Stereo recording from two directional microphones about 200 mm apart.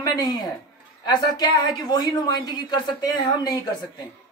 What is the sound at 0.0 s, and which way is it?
A man's voice, 20° left (ahead or behind).